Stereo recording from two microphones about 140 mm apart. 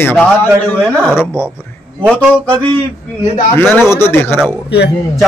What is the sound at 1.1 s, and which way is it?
Speech, 5° right (ahead or behind).